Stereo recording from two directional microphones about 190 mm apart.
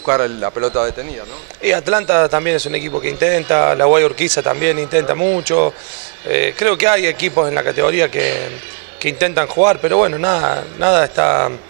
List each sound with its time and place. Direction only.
0.0 s speech: 25° right (ahead or behind)